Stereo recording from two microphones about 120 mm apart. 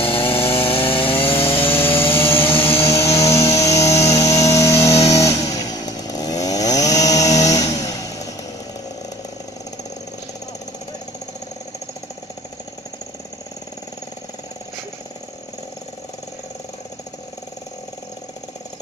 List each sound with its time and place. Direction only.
0.0 s chainsaw: 50° left (ahead or behind)
2.1 s chainsaw: 20° left (ahead or behind)
2.4 s chainsaw: 50° left (ahead or behind)
2.8 s vehicle: 25° left (ahead or behind)
3.5 s music: 25° left (ahead or behind)
4.0 s vehicle: 25° left (ahead or behind)